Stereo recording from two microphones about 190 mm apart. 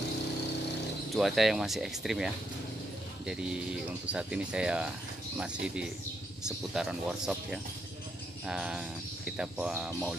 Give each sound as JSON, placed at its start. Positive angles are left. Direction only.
{"t": 1.1, "sound": "speech", "side_deg": 0}
{"t": 9.8, "sound": "speech", "side_deg": -15}